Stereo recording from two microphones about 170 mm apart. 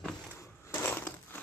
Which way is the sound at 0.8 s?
15° left (ahead or behind).